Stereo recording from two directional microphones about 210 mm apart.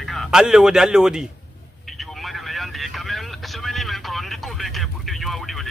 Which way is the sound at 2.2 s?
Centre (ahead or behind).